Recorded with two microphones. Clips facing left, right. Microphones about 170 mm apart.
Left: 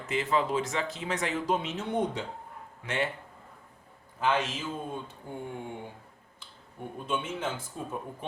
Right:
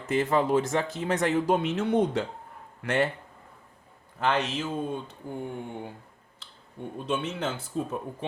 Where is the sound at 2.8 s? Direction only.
55° right (ahead or behind).